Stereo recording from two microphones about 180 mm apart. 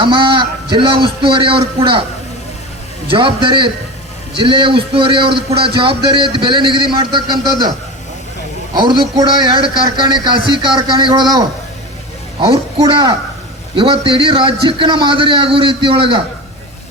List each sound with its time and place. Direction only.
0.0 s a man's voice: 25° right (ahead or behind)
3.1 s a man's voice: 30° right (ahead or behind)
8.7 s a man's voice: 25° right (ahead or behind)